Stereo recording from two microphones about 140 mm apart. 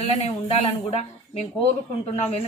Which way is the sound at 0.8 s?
45° left (ahead or behind).